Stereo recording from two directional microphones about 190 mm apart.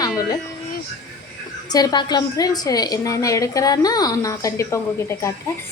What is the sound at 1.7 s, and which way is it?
A woman's voice, 20° left (ahead or behind).